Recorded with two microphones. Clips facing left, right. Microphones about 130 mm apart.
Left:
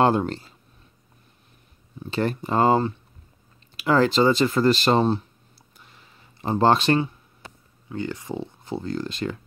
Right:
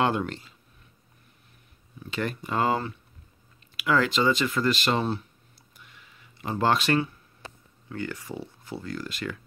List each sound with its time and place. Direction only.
0.0 s speech: 35° left (ahead or behind)
2.0 s speech: 35° left (ahead or behind)
5.8 s a sound: 35° left (ahead or behind)
7.9 s speech: 20° left (ahead or behind)